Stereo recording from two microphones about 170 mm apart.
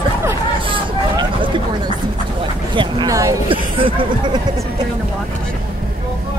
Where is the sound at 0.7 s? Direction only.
30° right (ahead or behind).